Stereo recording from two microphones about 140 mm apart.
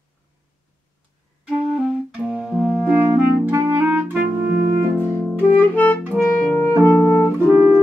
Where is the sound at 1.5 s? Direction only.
10° right (ahead or behind).